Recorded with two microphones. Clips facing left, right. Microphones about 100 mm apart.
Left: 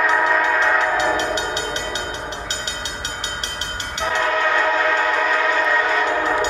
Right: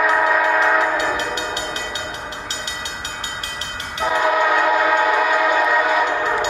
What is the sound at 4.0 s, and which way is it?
Train, 10° right (ahead or behind).